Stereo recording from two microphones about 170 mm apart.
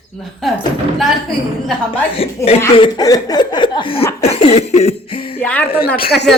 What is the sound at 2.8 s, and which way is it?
Speech, 20° left (ahead or behind).